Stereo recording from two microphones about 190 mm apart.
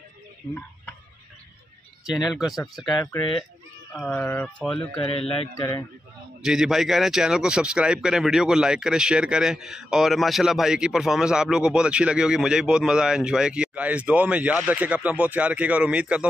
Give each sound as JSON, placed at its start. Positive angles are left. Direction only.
{"t": 2.3, "sound": "speech", "side_deg": 0}
{"t": 3.0, "sound": "a man's voice", "side_deg": 20}
{"t": 3.9, "sound": "speech", "side_deg": 5}
{"t": 5.0, "sound": "a man's voice", "side_deg": 30}
{"t": 6.4, "sound": "speech", "side_deg": 0}